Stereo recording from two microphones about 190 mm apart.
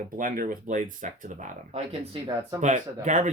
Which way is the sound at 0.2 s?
45° right (ahead or behind).